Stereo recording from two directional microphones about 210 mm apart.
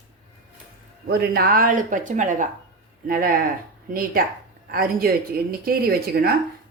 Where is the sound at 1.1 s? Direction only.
50° right (ahead or behind).